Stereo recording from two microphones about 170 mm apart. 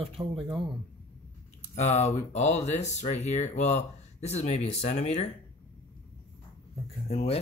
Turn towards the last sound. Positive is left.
turn(degrees=35)  # may be behind; listen again after turning